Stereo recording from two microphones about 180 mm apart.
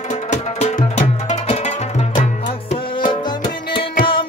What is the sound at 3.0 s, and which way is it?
Music, 30° left (ahead or behind).